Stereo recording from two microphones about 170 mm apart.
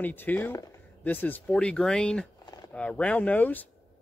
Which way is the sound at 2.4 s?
25° left (ahead or behind).